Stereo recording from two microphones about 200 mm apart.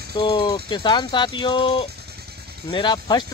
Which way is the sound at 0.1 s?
25° left (ahead or behind).